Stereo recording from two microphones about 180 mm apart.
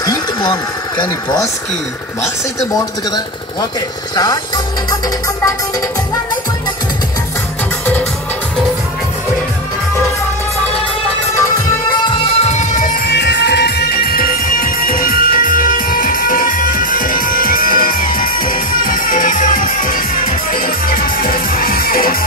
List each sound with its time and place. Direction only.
0.0 s speech: 20° left (ahead or behind)
12.1 s music: 35° left (ahead or behind)
13.1 s music: 70° left (ahead or behind)